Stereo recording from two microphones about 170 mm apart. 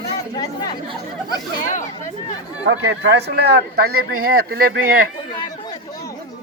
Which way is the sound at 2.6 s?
90° right.